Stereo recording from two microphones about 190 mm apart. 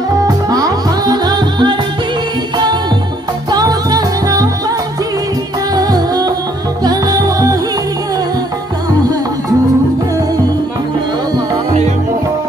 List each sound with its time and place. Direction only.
0.5 s music: 20° right (ahead or behind)
5.8 s music: 20° right (ahead or behind)
11.5 s music: 35° right (ahead or behind)